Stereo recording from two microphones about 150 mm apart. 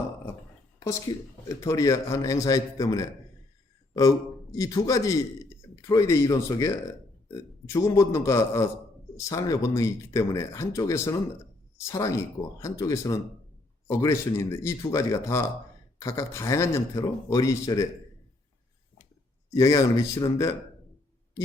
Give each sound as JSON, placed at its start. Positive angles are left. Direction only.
{"t": 0.9, "sound": "a man's voice", "side_deg": 20}
{"t": 4.5, "sound": "a man's voice", "side_deg": 20}
{"t": 19.5, "sound": "a man's voice", "side_deg": 20}